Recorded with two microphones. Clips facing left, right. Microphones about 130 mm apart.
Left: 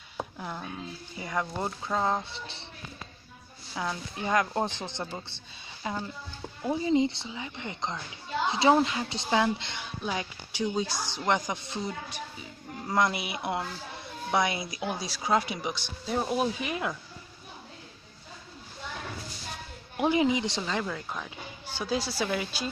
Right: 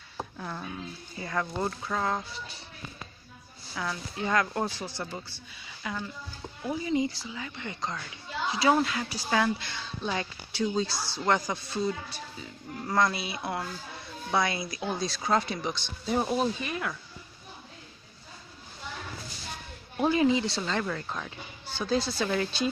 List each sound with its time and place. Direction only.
0.4 s speech: 10° left (ahead or behind)
3.7 s speech: 20° left (ahead or behind)
16.1 s speech: centre (ahead or behind)
16.5 s speech: 20° left (ahead or behind)
20.0 s speech: 15° left (ahead or behind)